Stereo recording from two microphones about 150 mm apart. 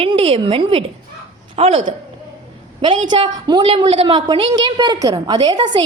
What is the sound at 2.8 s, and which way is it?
A woman's voice, 35° right (ahead or behind).